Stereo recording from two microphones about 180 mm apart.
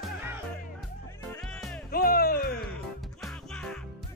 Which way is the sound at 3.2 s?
5° left (ahead or behind).